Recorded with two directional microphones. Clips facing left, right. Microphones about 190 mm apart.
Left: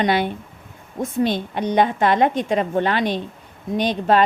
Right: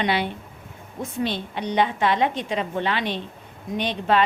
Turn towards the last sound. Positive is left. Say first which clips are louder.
# left 4 dB
turn(degrees=40)  # may be behind; listen again after turning